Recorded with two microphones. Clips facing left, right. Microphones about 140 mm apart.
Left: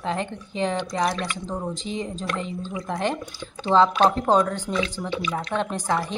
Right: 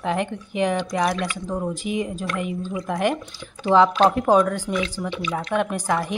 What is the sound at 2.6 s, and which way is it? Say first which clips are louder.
Speech: right 3 dB; 20° left (ahead or behind).